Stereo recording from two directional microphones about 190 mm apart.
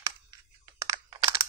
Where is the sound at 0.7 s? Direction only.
20° right (ahead or behind).